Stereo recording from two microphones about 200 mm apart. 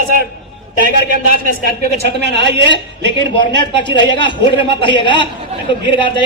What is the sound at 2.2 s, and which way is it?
Speech, 60° right (ahead or behind).